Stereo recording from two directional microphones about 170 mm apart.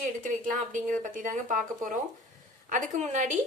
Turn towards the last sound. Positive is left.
turn(degrees=-45)  # may be behind; listen again after turning